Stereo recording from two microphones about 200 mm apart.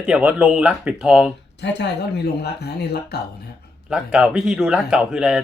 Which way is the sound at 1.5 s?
60° left (ahead or behind).